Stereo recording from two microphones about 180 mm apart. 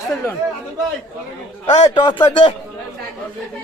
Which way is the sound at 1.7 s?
25° left (ahead or behind).